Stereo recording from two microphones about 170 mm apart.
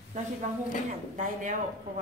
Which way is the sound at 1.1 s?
50° right (ahead or behind).